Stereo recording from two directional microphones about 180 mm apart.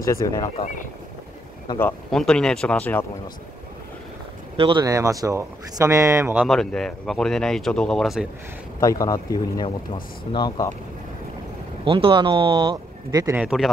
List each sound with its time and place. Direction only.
0.0 s speech: 15° left (ahead or behind)
1.8 s speech: 5° left (ahead or behind)
4.6 s speech: 25° right (ahead or behind)
6.3 s speech: centre (ahead or behind)
8.7 s speech: 20° left (ahead or behind)
11.8 s speech: 30° right (ahead or behind)
13.4 s speech: 5° right (ahead or behind)